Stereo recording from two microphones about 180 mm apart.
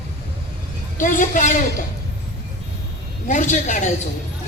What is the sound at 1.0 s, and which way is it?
Speech, 45° left (ahead or behind).